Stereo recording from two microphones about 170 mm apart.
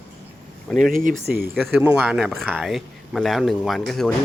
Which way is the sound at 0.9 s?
55° right (ahead or behind).